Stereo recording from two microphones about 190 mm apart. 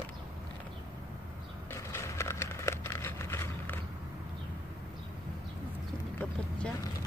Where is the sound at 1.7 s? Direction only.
15° left (ahead or behind).